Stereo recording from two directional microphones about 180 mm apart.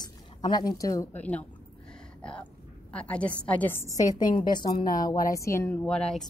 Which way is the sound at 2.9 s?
5° left (ahead or behind).